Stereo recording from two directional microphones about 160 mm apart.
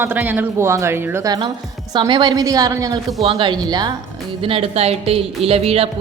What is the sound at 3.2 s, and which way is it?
Speech, 35° right (ahead or behind).